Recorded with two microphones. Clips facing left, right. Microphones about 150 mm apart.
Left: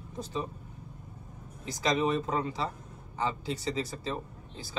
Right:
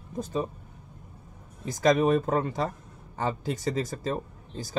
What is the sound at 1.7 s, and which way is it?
Speech, 50° right (ahead or behind).